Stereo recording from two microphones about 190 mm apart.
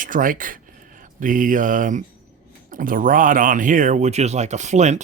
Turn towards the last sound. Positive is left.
turn(degrees=-35)  # may be behind; listen again after turning